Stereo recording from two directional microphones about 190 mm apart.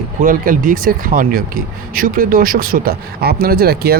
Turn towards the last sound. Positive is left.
turn(degrees=-55)  # may be behind; listen again after turning